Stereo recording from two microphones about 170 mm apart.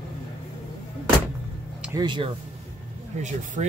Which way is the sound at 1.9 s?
25° right (ahead or behind).